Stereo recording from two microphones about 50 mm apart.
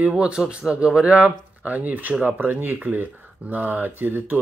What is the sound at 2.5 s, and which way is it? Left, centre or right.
Speech, right.